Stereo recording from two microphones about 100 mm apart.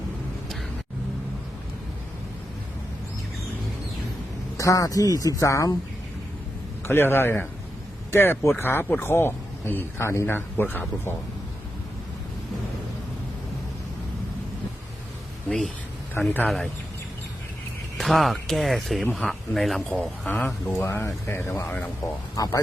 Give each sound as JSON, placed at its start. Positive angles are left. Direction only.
{"t": 4.5, "sound": "speech", "side_deg": 35}
{"t": 6.8, "sound": "speech", "side_deg": 20}
{"t": 15.4, "sound": "speech", "side_deg": 5}
{"t": 16.2, "sound": "speech", "side_deg": 20}
{"t": 17.9, "sound": "speech", "side_deg": 0}
{"t": 20.4, "sound": "speech", "side_deg": 20}
{"t": 22.4, "sound": "speech", "side_deg": 35}